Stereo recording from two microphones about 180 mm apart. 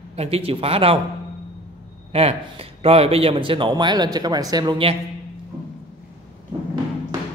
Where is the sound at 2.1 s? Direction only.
30° right (ahead or behind).